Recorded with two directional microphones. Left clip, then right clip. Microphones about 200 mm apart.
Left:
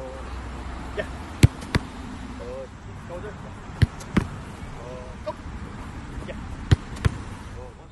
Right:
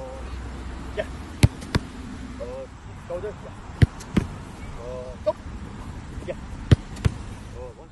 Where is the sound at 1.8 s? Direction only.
20° left (ahead or behind).